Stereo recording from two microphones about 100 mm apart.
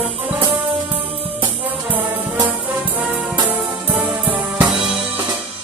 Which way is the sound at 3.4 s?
15° right (ahead or behind).